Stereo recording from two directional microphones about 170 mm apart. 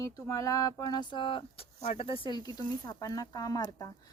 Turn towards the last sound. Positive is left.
turn(degrees=20)  # may be behind; listen again after turning